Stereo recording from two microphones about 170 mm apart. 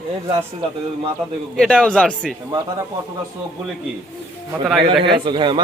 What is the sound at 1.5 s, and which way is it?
Speech, 5° left (ahead or behind).